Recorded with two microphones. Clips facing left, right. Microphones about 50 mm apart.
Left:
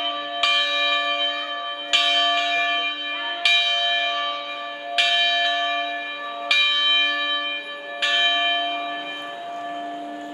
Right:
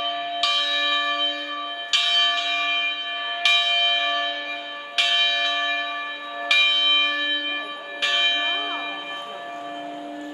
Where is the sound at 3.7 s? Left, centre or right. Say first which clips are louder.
Right 1 dB; centre.